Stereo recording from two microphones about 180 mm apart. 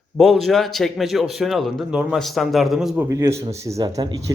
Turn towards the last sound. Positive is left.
turn(degrees=-20)  # may be behind; listen again after turning